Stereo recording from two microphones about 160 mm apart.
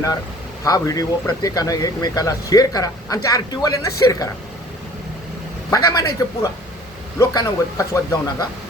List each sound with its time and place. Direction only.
0.6 s speech: 20° left (ahead or behind)
5.7 s speech: 20° left (ahead or behind)